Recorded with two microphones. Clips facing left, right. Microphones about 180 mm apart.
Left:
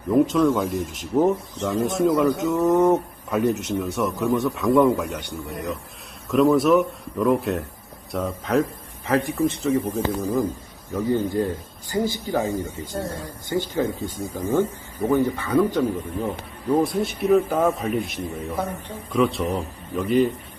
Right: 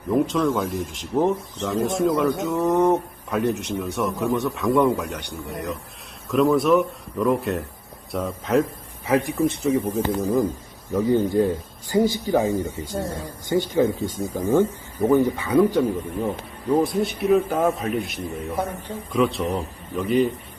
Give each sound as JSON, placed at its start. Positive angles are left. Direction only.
{"t": 0.1, "sound": "speech", "side_deg": 0}
{"t": 9.0, "sound": "a man's voice", "side_deg": -10}